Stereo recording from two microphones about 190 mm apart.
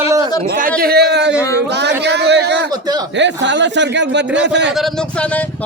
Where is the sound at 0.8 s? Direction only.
55° right (ahead or behind).